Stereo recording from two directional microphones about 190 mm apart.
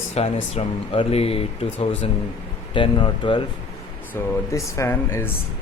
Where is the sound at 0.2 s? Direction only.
35° left (ahead or behind).